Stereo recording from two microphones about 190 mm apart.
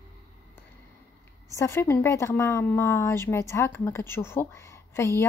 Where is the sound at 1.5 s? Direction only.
15° left (ahead or behind).